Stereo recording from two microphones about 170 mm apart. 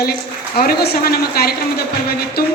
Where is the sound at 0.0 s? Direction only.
65° left (ahead or behind).